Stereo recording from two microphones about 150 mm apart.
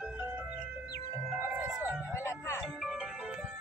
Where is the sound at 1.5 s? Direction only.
10° right (ahead or behind).